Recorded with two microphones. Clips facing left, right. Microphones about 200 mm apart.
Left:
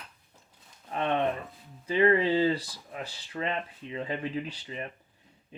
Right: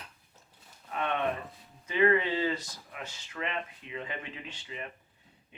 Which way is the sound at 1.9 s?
30° left (ahead or behind).